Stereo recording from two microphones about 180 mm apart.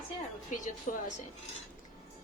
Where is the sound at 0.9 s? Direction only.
45° left (ahead or behind).